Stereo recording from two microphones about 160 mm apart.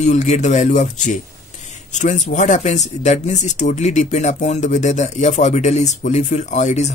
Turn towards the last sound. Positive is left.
turn(degrees=45)  # may be behind; listen again after turning